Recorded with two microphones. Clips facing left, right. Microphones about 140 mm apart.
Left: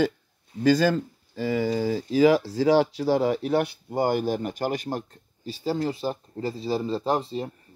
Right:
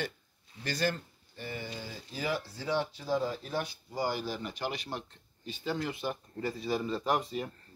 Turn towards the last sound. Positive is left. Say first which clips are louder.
# left 5 dB
turn(degrees=30)  # may be behind; listen again after turning